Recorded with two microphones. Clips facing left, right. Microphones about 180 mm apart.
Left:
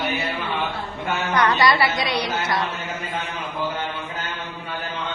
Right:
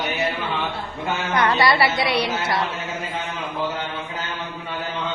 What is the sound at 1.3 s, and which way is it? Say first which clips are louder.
Speech: even; 25° right (ahead or behind).